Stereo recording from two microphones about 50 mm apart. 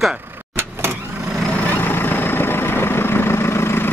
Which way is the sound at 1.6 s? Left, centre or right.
Left.